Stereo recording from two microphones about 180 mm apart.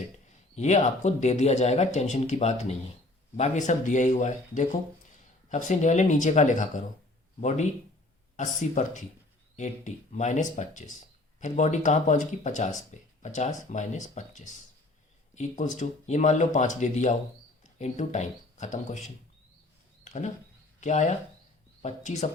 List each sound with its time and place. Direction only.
0.5 s speech: 40° left (ahead or behind)